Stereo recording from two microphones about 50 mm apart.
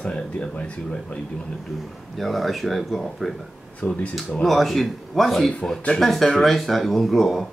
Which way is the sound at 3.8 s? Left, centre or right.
Left.